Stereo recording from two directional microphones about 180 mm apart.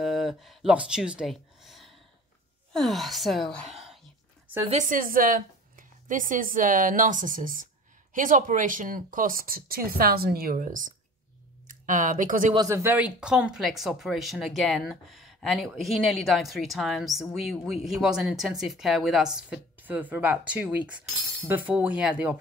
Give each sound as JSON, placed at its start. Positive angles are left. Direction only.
{"t": 0.0, "sound": "speech", "side_deg": 0}
{"t": 4.6, "sound": "a woman's voice", "side_deg": -45}
{"t": 12.5, "sound": "speech", "side_deg": -15}